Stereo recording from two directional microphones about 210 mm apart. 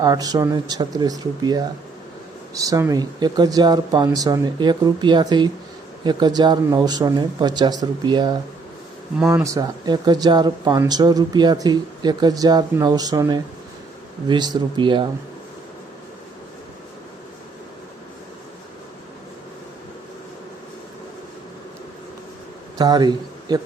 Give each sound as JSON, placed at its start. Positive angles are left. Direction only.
{"t": 0.0, "sound": "speech", "side_deg": -15}
{"t": 9.1, "sound": "speech", "side_deg": -5}
{"t": 9.4, "sound": "speech", "side_deg": -15}
{"t": 22.8, "sound": "speech", "side_deg": -20}